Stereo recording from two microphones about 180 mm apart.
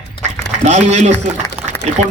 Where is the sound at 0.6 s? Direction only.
40° right (ahead or behind).